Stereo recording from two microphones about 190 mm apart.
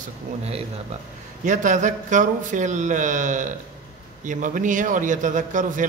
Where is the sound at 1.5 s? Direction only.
40° right (ahead or behind).